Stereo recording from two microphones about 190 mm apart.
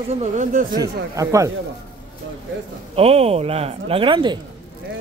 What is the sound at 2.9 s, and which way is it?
Speech, 30° right (ahead or behind).